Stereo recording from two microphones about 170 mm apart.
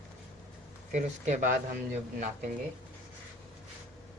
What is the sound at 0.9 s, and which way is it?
Speech, 45° right (ahead or behind).